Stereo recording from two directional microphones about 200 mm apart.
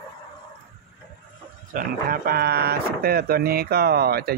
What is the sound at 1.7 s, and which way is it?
Speech, 45° right (ahead or behind).